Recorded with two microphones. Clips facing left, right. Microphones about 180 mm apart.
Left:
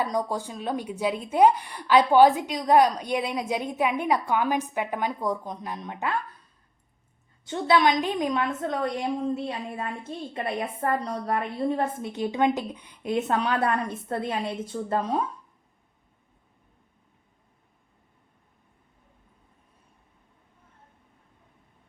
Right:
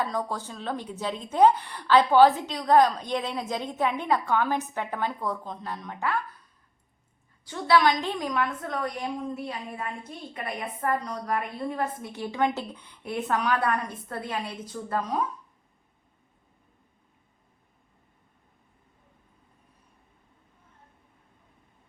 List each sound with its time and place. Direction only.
0.0 s speech: 15° left (ahead or behind)
7.4 s a woman's voice: 25° left (ahead or behind)